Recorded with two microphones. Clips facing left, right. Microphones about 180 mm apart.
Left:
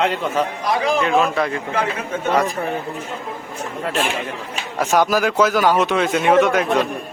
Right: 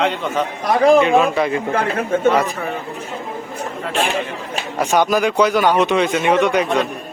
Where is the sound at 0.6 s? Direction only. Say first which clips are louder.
Right 10 dB; 60° right (ahead or behind).